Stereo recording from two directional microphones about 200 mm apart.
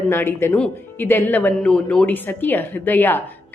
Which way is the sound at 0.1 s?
10° left (ahead or behind).